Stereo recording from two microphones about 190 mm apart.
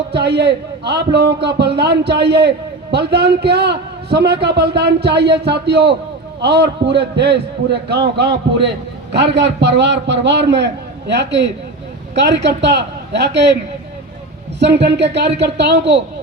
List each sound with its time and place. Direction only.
0.1 s a man's voice: 60° right (ahead or behind)
14.6 s a man's voice: 65° right (ahead or behind)